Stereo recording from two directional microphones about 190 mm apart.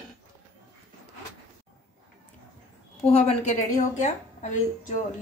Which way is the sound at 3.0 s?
35° left (ahead or behind).